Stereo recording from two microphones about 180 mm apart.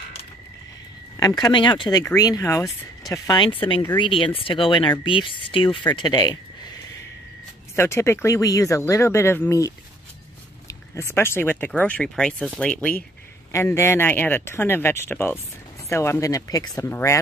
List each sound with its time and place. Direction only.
1.1 s speech: 20° left (ahead or behind)
7.7 s speech: 15° left (ahead or behind)
10.7 s speech: 15° left (ahead or behind)